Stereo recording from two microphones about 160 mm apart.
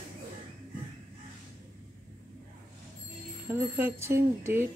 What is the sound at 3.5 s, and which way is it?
Speech, 10° right (ahead or behind).